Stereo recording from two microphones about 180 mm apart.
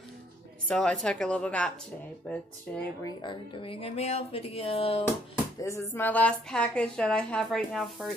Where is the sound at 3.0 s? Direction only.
25° left (ahead or behind).